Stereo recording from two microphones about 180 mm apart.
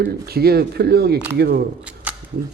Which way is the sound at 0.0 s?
60° right (ahead or behind).